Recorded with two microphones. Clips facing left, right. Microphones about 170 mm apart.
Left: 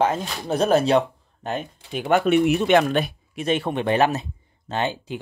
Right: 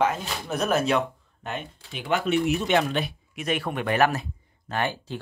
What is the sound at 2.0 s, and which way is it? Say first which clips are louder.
Speech: left 6 dB; 55° left (ahead or behind).